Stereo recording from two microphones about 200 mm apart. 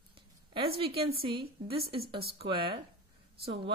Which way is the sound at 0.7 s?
30° right (ahead or behind).